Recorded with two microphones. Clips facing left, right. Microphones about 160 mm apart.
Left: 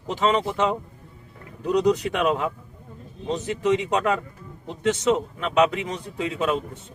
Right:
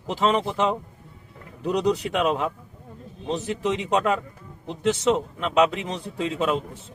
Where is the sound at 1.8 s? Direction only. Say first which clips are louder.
Even; centre (ahead or behind).